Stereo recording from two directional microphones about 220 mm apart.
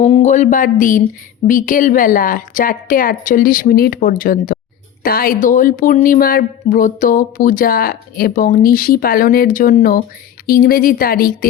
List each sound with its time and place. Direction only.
0.0 s a woman's voice: 30° left (ahead or behind)